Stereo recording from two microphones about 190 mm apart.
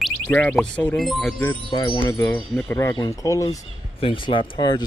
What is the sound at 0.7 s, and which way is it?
Speech, 5° left (ahead or behind).